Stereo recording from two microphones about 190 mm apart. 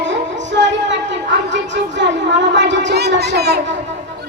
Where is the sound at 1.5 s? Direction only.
70° right (ahead or behind).